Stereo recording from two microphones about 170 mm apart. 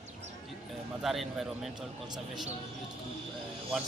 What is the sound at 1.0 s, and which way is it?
Speech, centre (ahead or behind).